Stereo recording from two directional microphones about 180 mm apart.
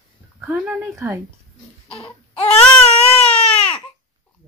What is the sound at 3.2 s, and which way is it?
Baby cry, 5° left (ahead or behind).